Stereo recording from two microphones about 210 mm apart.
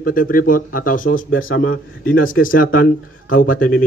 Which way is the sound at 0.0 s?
40° left (ahead or behind).